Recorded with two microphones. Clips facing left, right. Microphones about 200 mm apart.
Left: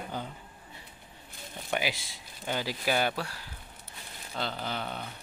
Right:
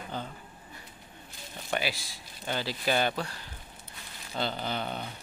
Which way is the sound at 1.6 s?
15° left (ahead or behind).